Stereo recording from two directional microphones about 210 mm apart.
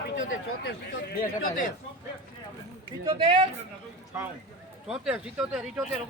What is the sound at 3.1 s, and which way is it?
Speech, 25° right (ahead or behind).